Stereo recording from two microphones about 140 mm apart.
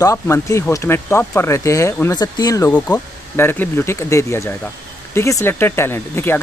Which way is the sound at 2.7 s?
10° left (ahead or behind).